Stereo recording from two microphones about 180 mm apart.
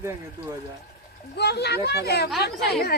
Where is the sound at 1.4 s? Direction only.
65° left (ahead or behind).